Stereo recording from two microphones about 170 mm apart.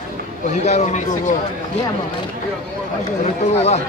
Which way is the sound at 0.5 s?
40° left (ahead or behind).